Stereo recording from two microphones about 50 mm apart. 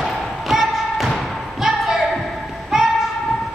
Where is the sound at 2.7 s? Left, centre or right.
Centre.